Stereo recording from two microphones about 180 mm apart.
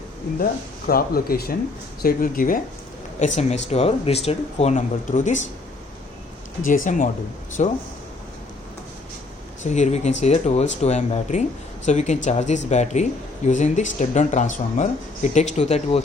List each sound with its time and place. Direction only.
0.9 s speech: 55° left (ahead or behind)
6.7 s speech: 45° left (ahead or behind)
9.6 s speech: 40° left (ahead or behind)